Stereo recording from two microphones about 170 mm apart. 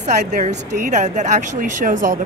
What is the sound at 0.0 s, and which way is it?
Speech, 40° right (ahead or behind).